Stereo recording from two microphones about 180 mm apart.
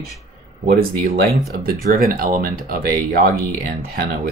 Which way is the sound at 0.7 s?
55° right (ahead or behind).